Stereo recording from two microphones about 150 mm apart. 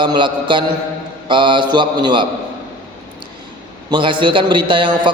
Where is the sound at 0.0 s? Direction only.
30° right (ahead or behind).